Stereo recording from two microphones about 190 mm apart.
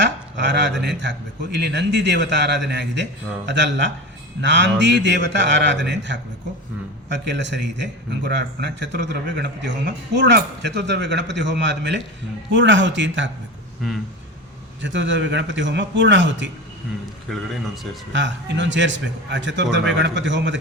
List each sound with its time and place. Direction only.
0.0 s a man's voice: 70° right (ahead or behind)
14.8 s a man's voice: 75° right (ahead or behind)
17.3 s speech: 5° left (ahead or behind)
18.1 s a man's voice: 70° right (ahead or behind)